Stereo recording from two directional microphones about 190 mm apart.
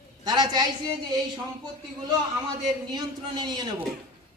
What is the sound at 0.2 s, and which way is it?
Speech, 20° right (ahead or behind).